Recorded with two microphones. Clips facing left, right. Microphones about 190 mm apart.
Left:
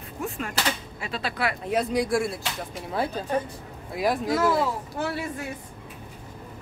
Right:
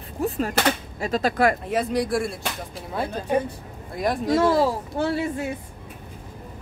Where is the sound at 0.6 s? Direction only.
45° right (ahead or behind).